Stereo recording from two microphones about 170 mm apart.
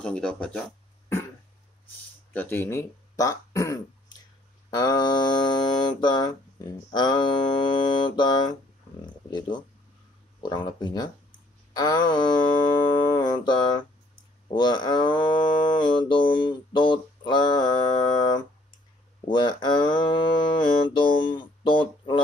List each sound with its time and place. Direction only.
0.0 s speech: 5° left (ahead or behind)
2.3 s speech: 15° left (ahead or behind)
4.6 s a sound: 25° left (ahead or behind)